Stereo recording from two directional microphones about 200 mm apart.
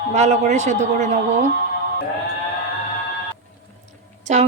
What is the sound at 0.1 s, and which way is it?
A woman's voice, 35° right (ahead or behind).